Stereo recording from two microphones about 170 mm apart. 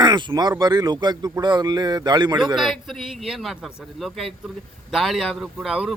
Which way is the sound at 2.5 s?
Centre (ahead or behind).